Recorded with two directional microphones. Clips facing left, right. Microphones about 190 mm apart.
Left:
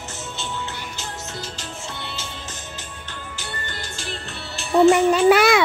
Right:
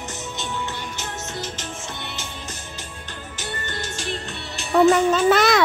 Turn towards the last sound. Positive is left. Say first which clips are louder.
# left 2 dB
turn(degrees=10)  # may be behind; listen again after turning